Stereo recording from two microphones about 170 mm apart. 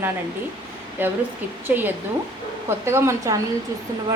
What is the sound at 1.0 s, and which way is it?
A woman's voice, 10° right (ahead or behind).